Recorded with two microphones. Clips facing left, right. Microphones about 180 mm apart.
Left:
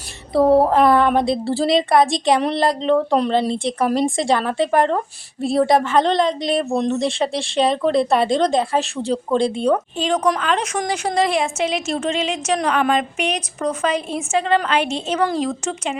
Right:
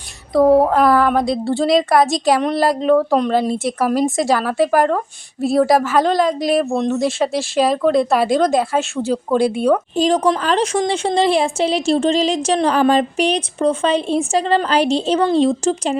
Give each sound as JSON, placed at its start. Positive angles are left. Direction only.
{"t": 0.8, "sound": "speech", "side_deg": 0}
{"t": 9.9, "sound": "speech", "side_deg": -35}